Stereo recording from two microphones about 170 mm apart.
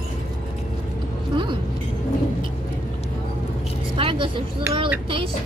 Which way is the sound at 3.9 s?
30° right (ahead or behind).